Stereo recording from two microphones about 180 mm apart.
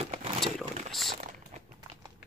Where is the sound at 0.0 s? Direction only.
35° right (ahead or behind).